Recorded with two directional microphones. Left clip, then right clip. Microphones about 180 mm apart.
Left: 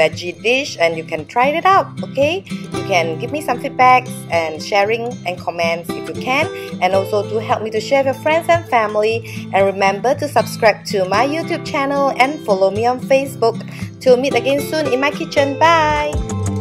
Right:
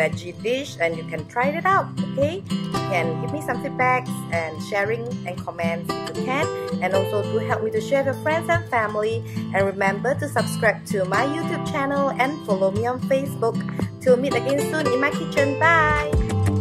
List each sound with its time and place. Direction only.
0.0 s speech: 20° left (ahead or behind)
6.2 s speech: 20° left (ahead or behind)